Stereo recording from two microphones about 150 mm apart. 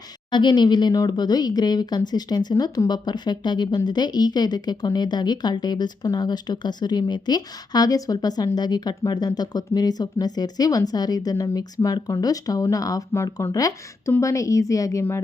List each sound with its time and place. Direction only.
0.3 s speech: 30° left (ahead or behind)